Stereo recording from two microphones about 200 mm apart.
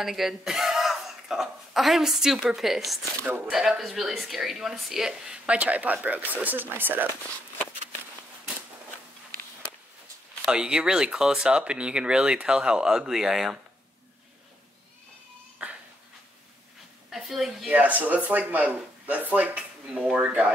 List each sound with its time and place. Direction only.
0.0 s speech: centre (ahead or behind)
10.4 s speech: 5° right (ahead or behind)
15.6 s a sound: 5° right (ahead or behind)
17.1 s speech: centre (ahead or behind)